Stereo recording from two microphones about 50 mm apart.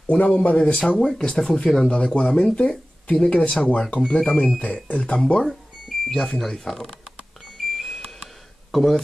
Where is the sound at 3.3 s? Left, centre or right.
Left.